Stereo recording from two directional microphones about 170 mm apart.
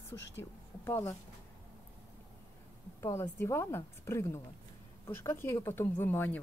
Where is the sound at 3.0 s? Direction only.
15° left (ahead or behind).